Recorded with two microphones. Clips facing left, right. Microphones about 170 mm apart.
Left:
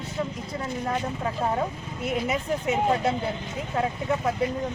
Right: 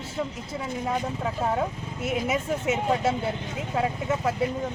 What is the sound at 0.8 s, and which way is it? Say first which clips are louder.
Speech: right 1 dB; 5° right (ahead or behind).